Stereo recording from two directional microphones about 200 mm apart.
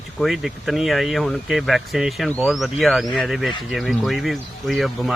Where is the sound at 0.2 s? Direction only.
Centre (ahead or behind).